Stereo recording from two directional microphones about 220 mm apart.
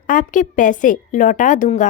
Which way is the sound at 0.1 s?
35° left (ahead or behind).